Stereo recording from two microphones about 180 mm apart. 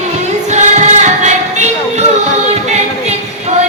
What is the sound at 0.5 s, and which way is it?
Music, 40° right (ahead or behind).